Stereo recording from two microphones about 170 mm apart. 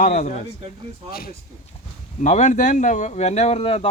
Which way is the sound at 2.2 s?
45° left (ahead or behind).